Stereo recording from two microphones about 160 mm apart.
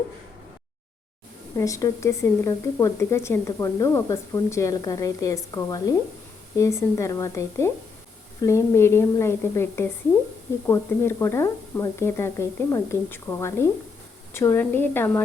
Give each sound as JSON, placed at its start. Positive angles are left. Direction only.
{"t": 1.5, "sound": "speech", "side_deg": 20}